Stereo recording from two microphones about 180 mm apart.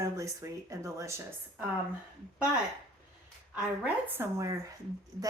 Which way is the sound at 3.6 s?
10° right (ahead or behind).